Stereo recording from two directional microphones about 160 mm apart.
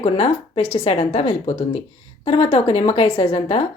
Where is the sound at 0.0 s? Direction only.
40° left (ahead or behind).